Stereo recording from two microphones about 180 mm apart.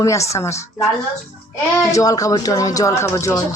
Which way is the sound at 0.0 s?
15° left (ahead or behind).